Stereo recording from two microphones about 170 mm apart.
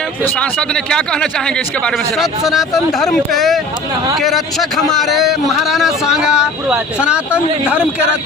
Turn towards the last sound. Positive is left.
turn(degrees=-5)  # may be behind; listen again after turning